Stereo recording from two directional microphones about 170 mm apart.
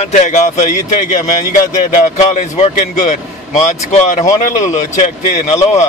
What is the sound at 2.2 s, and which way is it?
A man's voice, 45° left (ahead or behind).